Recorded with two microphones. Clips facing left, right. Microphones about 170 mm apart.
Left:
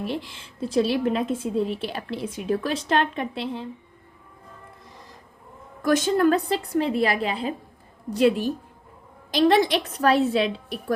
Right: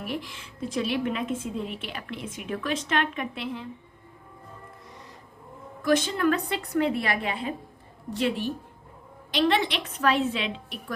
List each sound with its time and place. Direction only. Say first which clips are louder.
0.0 s a woman's voice: left 4 dB; 30° left (ahead or behind)
5.8 s a woman's voice: left 4 dB; 45° left (ahead or behind)